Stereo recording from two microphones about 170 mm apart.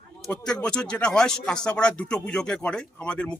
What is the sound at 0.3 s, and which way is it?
Speech, 5° left (ahead or behind).